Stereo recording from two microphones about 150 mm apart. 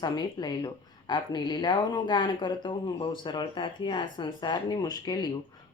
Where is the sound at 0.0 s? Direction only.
25° left (ahead or behind).